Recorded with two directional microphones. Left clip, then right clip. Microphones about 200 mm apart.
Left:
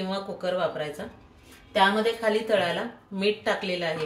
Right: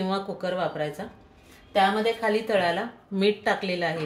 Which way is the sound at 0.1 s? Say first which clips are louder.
Even; 30° right (ahead or behind).